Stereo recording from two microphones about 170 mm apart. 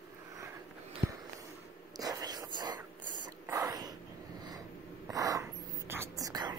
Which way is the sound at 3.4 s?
20° right (ahead or behind).